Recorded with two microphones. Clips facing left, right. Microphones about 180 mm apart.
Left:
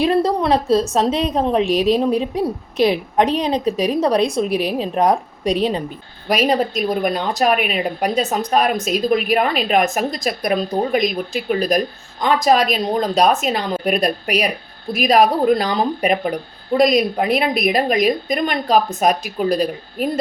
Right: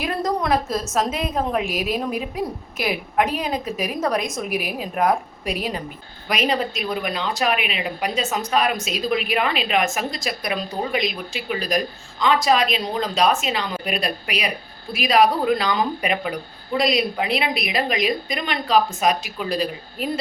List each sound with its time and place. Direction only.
0.0 s a woman's voice: 30° left (ahead or behind)
4.4 s a woman's voice: 10° right (ahead or behind)
4.8 s a woman's voice: 35° left (ahead or behind)